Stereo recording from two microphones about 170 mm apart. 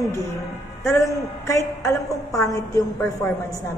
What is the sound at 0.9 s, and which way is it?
A woman's voice, 15° left (ahead or behind).